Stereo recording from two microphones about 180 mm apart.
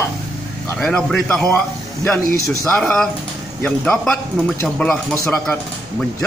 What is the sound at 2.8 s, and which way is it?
Speech, 5° left (ahead or behind).